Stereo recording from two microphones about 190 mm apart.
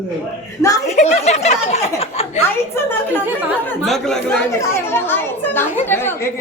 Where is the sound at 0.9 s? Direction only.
40° left (ahead or behind).